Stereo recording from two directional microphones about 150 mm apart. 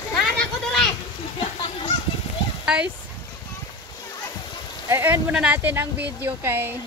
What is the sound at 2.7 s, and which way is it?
Speech, 10° right (ahead or behind).